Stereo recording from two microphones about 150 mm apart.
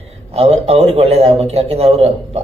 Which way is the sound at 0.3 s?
45° right (ahead or behind).